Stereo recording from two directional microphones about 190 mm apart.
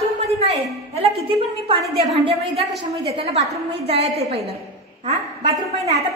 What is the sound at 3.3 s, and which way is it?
A woman's voice, 35° right (ahead or behind).